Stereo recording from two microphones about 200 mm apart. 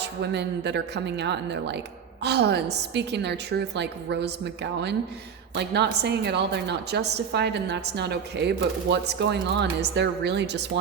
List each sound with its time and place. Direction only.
0.0 s a woman's voice: 60° right (ahead or behind)